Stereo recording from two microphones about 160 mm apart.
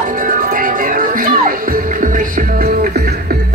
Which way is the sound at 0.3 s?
60° right (ahead or behind).